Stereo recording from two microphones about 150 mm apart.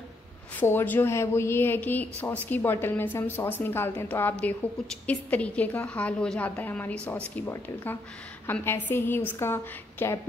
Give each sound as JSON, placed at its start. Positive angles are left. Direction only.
{"t": 0.6, "sound": "speech", "side_deg": 15}